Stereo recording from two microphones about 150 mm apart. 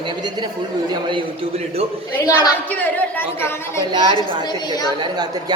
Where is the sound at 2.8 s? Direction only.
15° left (ahead or behind).